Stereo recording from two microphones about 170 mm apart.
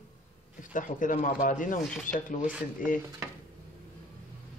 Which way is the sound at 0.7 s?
50° left (ahead or behind).